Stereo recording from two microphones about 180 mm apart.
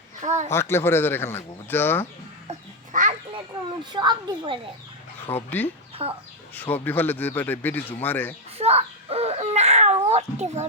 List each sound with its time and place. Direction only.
0.2 s speech: 40° right (ahead or behind)
0.5 s a man's voice: 15° left (ahead or behind)
2.5 s bird: 40° right (ahead or behind)
3.9 s a child's voice: 25° right (ahead or behind)
5.3 s a man's voice: 10° left (ahead or behind)
6.0 s speech: 35° right (ahead or behind)
6.5 s a man's voice: 10° left (ahead or behind)
8.5 s a sound: 35° right (ahead or behind)